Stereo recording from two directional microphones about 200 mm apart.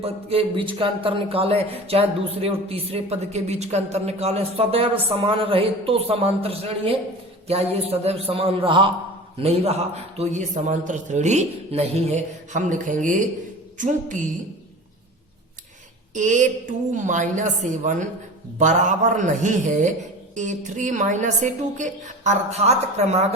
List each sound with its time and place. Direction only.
0.0 s a man's voice: 30° right (ahead or behind)
16.1 s a man's voice: 40° right (ahead or behind)